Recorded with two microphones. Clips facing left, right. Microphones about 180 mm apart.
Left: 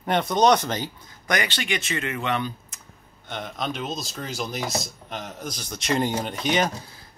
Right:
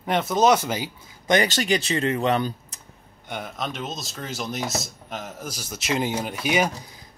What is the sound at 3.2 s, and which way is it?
Speech, 5° right (ahead or behind).